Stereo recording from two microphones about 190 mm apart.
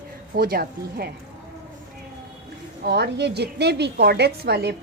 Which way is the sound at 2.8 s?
60° right (ahead or behind).